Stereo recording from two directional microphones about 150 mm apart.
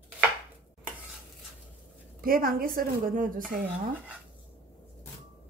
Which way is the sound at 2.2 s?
75° right (ahead or behind).